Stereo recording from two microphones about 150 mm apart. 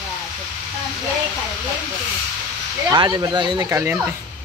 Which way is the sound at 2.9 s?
30° right (ahead or behind).